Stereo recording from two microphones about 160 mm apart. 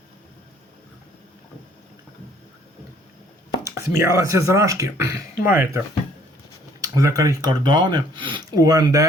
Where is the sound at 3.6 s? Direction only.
20° right (ahead or behind).